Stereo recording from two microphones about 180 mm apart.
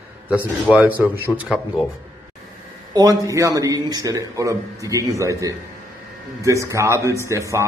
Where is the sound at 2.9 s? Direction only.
20° right (ahead or behind).